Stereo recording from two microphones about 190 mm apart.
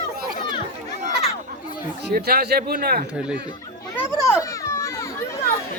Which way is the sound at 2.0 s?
55° right (ahead or behind).